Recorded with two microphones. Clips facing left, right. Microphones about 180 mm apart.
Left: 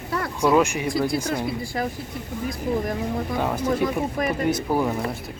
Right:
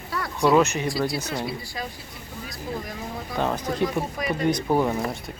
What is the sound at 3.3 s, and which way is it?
Speech, 10° left (ahead or behind).